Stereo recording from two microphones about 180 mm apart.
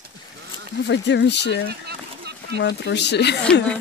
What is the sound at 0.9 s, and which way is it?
Speech, 75° left (ahead or behind).